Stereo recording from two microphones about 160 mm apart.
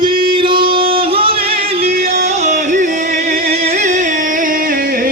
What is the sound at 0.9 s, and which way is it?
Yodeling, 35° right (ahead or behind).